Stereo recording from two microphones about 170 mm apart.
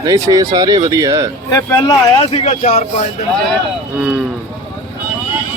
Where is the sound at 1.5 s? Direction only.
20° left (ahead or behind).